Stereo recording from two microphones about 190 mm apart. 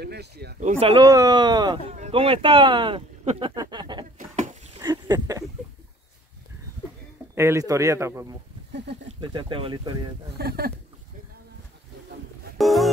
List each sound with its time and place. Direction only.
0.0 s speech: 60° right (ahead or behind)
0.6 s speech: 35° right (ahead or behind)
1.0 s speech: 20° right (ahead or behind)
1.9 s speech: 35° right (ahead or behind)
4.8 s a sound: 20° right (ahead or behind)
7.3 s a man's voice: 15° right (ahead or behind)
10.3 s speech: 55° right (ahead or behind)
12.5 s a sound: centre (ahead or behind)